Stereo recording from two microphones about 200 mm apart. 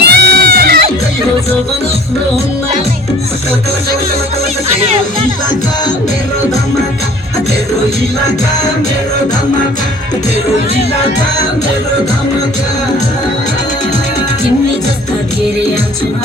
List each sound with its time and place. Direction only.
0.0 s music: 55° right (ahead or behind)